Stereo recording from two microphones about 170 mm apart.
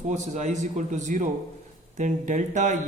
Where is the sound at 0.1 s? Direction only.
45° right (ahead or behind).